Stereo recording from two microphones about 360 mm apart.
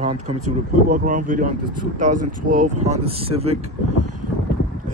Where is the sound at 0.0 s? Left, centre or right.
Centre.